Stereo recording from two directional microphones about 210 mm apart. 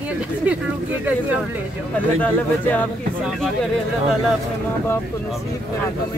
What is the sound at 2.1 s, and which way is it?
Speech, 10° left (ahead or behind).